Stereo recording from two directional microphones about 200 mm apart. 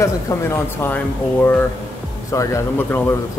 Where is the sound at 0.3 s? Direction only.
15° left (ahead or behind).